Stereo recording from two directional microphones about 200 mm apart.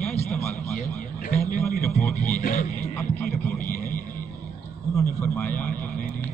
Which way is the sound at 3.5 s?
40° left (ahead or behind).